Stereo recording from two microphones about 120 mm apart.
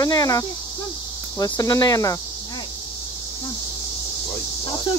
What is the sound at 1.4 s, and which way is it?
Speech, 30° left (ahead or behind).